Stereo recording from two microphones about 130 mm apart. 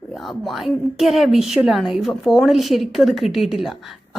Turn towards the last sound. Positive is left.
turn(degrees=0)  # may be behind; listen again after turning